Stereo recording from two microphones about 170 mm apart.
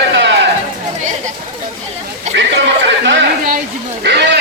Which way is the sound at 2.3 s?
90° right.